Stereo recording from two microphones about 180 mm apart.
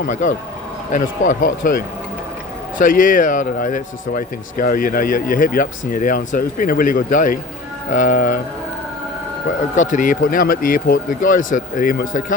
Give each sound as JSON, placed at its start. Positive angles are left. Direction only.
{"t": 0.0, "sound": "a man's voice", "side_deg": 45}
{"t": 9.7, "sound": "a man's voice", "side_deg": 45}